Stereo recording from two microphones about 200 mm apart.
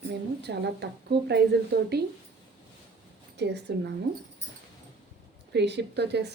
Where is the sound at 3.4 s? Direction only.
55° right (ahead or behind).